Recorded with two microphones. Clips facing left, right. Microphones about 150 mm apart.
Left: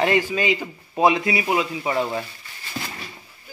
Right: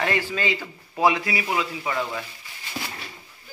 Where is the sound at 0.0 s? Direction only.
20° left (ahead or behind).